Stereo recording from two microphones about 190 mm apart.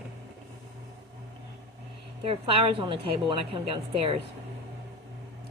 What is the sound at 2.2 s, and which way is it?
A woman's voice, 30° right (ahead or behind).